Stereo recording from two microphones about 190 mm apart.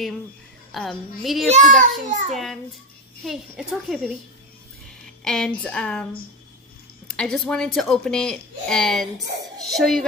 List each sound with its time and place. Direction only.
0.7 s speech: centre (ahead or behind)
1.8 s a child's voice: 40° right (ahead or behind)
2.3 s speech: centre (ahead or behind)
7.1 s speech: 5° left (ahead or behind)